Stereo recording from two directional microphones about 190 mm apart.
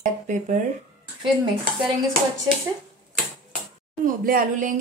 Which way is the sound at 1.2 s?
25° right (ahead or behind).